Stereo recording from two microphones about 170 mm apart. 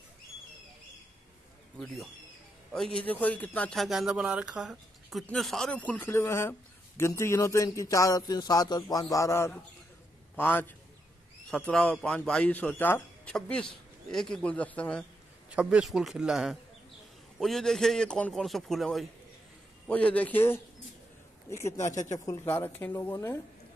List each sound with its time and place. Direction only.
2.7 s a man's voice: 5° left (ahead or behind)
15.5 s a man's voice: 5° right (ahead or behind); by 23.4 s 15° left (ahead or behind)